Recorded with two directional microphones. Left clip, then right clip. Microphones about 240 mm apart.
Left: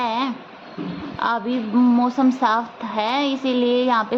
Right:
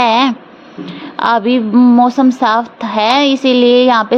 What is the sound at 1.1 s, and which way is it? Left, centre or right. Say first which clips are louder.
A woman's voice: right 10 dB; right.